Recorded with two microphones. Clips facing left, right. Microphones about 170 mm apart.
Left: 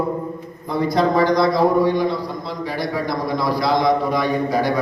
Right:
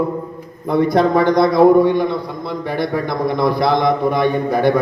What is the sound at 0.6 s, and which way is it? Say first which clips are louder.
A man's voice: right 4 dB; 60° right (ahead or behind).